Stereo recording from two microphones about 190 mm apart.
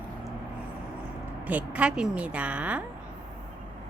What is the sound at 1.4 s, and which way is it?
A woman's voice, 5° right (ahead or behind).